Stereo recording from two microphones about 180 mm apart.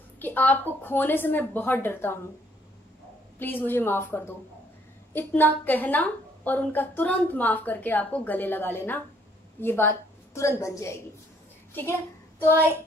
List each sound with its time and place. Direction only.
0.2 s a woman's voice: 10° left (ahead or behind)
3.3 s a woman's voice: 10° left (ahead or behind)